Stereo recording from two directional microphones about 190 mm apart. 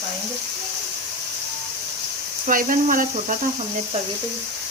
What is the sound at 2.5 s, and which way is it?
Speech, 45° right (ahead or behind).